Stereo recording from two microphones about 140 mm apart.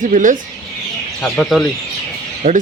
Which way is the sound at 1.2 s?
5° left (ahead or behind).